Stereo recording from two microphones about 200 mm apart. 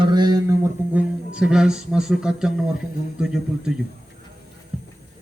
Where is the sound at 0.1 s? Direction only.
20° right (ahead or behind).